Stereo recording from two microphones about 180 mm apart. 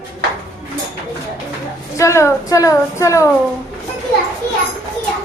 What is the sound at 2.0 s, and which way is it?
A child's voice, 15° left (ahead or behind).